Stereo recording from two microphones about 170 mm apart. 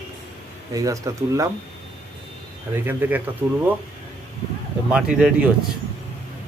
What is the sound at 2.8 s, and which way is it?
Speech, 10° right (ahead or behind).